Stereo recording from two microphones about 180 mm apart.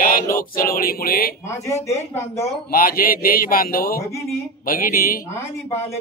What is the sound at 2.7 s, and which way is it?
Speech, 55° left (ahead or behind).